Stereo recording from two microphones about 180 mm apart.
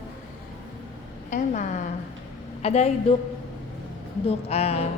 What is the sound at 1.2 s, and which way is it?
A woman's voice, 45° left (ahead or behind).